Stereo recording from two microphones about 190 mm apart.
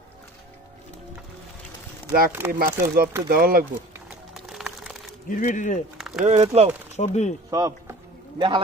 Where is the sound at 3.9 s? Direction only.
5° right (ahead or behind).